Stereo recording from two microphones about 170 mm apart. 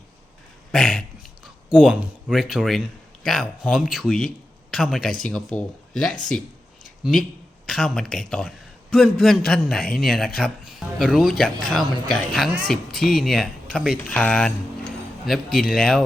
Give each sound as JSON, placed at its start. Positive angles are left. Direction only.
{"t": 0.7, "sound": "a man's voice", "side_deg": 0}